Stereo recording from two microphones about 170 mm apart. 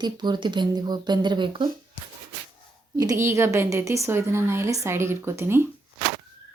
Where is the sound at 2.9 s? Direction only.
20° right (ahead or behind).